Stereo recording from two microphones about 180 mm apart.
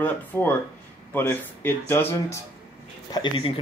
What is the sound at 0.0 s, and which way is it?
Speech, 10° left (ahead or behind).